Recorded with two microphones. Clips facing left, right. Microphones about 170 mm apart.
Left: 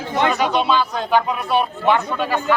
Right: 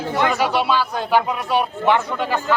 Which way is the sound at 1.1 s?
10° right (ahead or behind).